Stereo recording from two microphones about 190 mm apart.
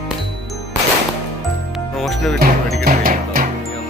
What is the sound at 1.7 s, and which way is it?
Music, centre (ahead or behind).